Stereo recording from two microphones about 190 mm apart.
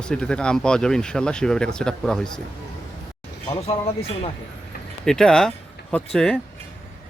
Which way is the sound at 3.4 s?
20° left (ahead or behind).